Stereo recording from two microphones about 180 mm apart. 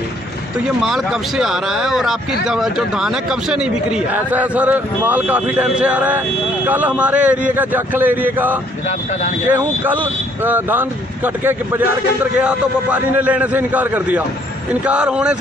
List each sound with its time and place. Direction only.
0.8 s speech: centre (ahead or behind)